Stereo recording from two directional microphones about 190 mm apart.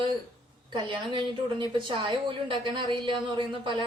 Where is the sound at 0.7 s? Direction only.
25° right (ahead or behind).